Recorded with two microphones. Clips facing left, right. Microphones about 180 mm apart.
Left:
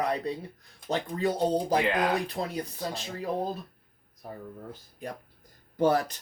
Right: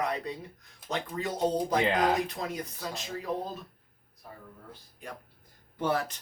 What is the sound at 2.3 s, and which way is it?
Speech, 35° left (ahead or behind).